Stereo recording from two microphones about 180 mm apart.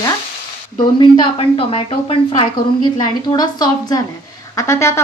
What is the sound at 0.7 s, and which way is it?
A woman's voice, 30° left (ahead or behind).